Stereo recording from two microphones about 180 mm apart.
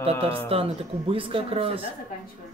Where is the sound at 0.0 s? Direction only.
30° right (ahead or behind).